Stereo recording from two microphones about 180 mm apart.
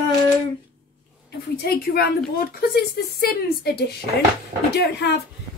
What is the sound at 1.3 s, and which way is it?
A woman's voice, 60° left (ahead or behind).